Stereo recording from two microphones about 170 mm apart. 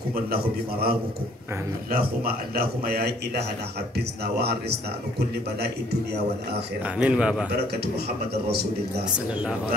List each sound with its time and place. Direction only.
0.1 s a man's voice: 65° right (ahead or behind)
7.0 s a man's voice: 5° right (ahead or behind)